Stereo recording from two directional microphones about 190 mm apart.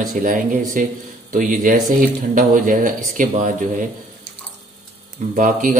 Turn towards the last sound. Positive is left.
turn(degrees=-40)  # may be behind; listen again after turning